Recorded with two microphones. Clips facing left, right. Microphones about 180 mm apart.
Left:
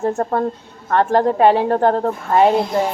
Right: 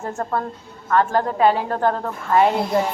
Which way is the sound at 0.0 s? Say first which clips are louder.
Left 6 dB; 35° left (ahead or behind).